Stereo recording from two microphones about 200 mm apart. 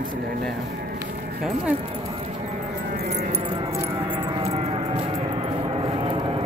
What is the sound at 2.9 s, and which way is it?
Music, 45° right (ahead or behind).